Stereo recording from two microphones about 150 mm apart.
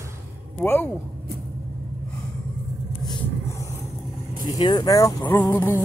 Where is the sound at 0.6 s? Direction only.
15° left (ahead or behind).